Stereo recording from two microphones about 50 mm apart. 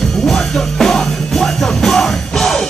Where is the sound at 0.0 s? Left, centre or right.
Centre.